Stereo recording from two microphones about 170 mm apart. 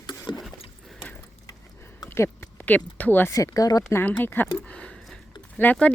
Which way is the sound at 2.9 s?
10° left (ahead or behind).